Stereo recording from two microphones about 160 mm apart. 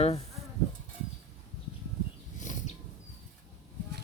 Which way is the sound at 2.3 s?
50° left (ahead or behind).